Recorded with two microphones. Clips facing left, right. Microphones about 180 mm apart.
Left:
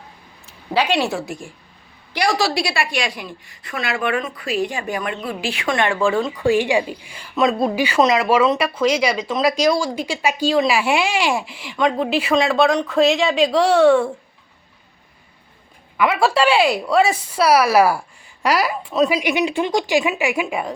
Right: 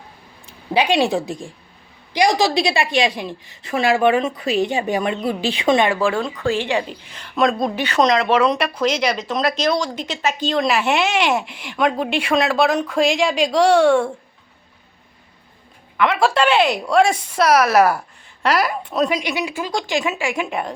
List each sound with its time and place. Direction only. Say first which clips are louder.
0.7 s a woman's voice: right 2 dB; 15° right (ahead or behind)
5.9 s speech: left 1 dB; centre (ahead or behind)
6.3 s a woman's voice: left 3 dB; 15° left (ahead or behind)
16.0 s a woman's voice: even; 5° left (ahead or behind)
19.2 s a woman's voice: left 5 dB; 20° left (ahead or behind)